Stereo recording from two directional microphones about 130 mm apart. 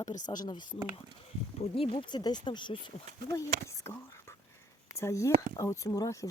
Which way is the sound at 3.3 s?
25° left (ahead or behind).